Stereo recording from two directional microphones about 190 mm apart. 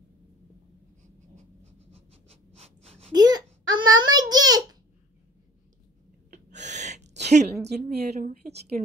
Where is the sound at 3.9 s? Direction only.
20° right (ahead or behind).